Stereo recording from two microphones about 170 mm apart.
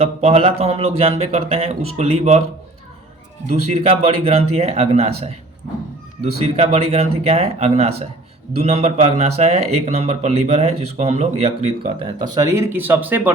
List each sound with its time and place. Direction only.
0.0 s speech: 35° right (ahead or behind)
3.5 s speech: 35° right (ahead or behind)
6.4 s speech: 40° right (ahead or behind)
12.0 s speech: 20° right (ahead or behind)